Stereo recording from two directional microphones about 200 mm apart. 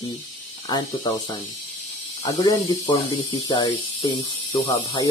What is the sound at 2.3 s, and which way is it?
Speech, 20° left (ahead or behind).